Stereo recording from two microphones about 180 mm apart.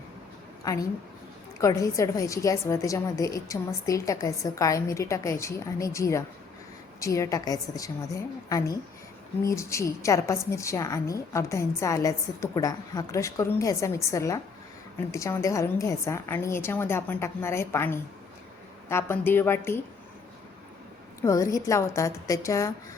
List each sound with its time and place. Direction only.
0.6 s a woman's voice: 20° left (ahead or behind)
21.2 s a woman's voice: 15° left (ahead or behind)